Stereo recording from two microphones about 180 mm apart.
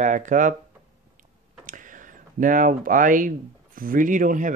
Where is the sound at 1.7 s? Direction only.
45° right (ahead or behind).